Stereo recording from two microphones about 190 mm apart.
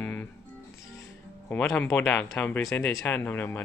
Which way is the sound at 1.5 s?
10° left (ahead or behind).